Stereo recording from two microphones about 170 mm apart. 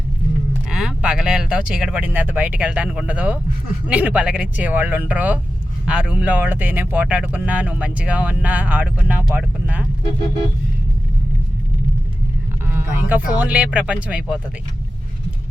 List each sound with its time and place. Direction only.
0.7 s speech: 5° right (ahead or behind)
12.6 s a sound: 10° right (ahead or behind)
13.3 s speech: 10° right (ahead or behind)